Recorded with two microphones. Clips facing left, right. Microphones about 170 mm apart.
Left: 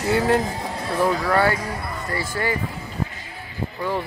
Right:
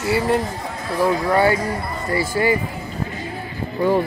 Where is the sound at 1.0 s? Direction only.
15° right (ahead or behind).